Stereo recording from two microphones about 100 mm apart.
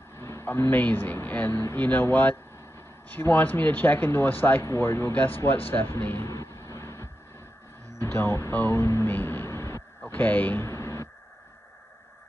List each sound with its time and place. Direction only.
0.2 s speech: 25° left (ahead or behind)
6.2 s vehicle: 30° left (ahead or behind)
8.0 s a sound: 25° left (ahead or behind)